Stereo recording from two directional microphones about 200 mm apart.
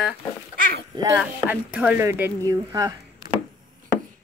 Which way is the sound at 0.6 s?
45° right (ahead or behind).